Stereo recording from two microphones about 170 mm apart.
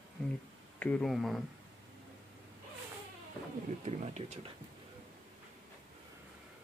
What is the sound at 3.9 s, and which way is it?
Speech, 40° right (ahead or behind).